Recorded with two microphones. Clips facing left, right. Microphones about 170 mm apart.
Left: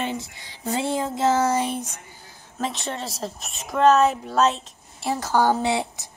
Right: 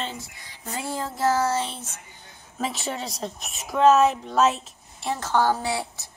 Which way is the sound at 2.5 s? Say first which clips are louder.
Left 1 dB; centre (ahead or behind).